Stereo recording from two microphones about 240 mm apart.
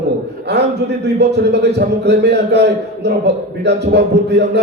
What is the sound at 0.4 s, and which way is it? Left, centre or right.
A man's voice, right.